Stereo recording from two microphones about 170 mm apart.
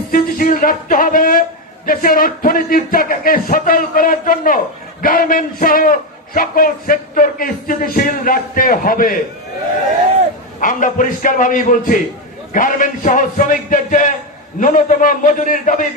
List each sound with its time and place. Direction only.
0.1 s a sound: 55° left (ahead or behind)
1.9 s a man's voice: 55° left (ahead or behind)
10.6 s a man's voice: 50° left (ahead or behind)